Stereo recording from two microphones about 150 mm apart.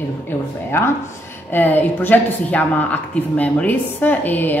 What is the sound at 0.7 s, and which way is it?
A woman's voice, 15° left (ahead or behind).